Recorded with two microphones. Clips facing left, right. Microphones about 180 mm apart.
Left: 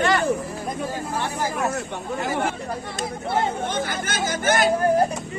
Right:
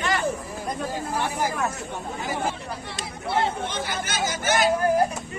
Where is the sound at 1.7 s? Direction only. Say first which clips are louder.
Left 5 dB; 65° left (ahead or behind).